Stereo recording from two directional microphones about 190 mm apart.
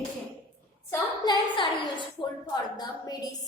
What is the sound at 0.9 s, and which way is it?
Speech, 20° left (ahead or behind).